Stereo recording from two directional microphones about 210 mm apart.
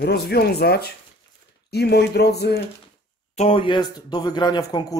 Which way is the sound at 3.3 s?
30° left (ahead or behind).